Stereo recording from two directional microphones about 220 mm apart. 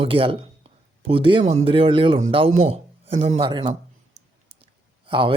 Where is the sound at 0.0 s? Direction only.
25° right (ahead or behind).